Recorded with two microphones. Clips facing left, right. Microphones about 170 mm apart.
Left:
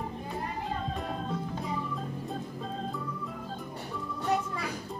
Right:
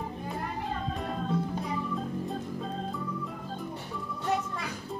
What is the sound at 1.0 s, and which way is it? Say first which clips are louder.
Music: right 3 dB; centre (ahead or behind).